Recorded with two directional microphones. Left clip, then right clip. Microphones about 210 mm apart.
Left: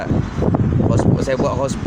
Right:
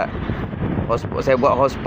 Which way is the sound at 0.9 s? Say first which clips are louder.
Right 3 dB; 5° left (ahead or behind).